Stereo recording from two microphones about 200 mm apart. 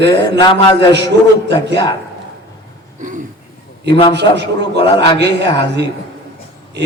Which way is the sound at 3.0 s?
40° right (ahead or behind).